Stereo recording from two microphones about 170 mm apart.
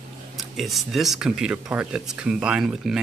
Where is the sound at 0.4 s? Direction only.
Centre (ahead or behind).